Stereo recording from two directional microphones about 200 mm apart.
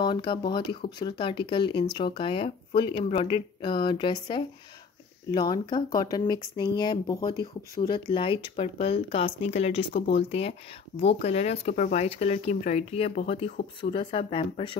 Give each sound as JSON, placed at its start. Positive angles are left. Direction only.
{"t": 0.0, "sound": "speech", "side_deg": 25}